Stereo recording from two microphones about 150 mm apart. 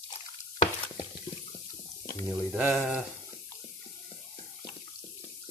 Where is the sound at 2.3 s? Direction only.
15° right (ahead or behind).